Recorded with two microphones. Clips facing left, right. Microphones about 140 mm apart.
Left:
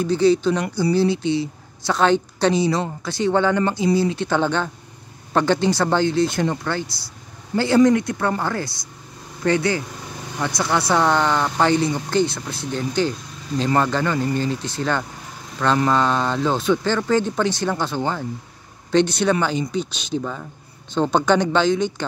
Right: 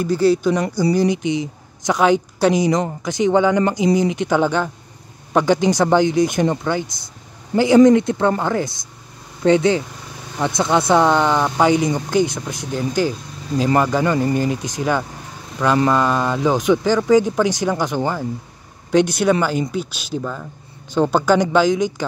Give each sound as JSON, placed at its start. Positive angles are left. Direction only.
{"t": 0.0, "sound": "speech", "side_deg": -10}